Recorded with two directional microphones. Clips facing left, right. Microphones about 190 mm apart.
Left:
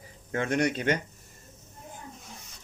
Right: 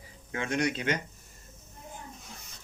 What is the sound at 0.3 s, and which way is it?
Speech, 45° left (ahead or behind).